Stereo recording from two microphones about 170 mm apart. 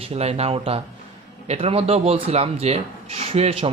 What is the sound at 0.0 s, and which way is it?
Speech, 35° right (ahead or behind).